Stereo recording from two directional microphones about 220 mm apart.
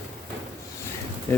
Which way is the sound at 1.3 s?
10° left (ahead or behind).